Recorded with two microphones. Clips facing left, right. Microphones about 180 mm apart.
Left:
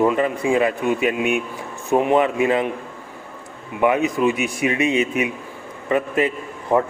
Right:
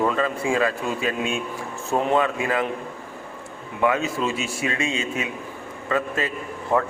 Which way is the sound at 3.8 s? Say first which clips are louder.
Left 5 dB; 20° left (ahead or behind).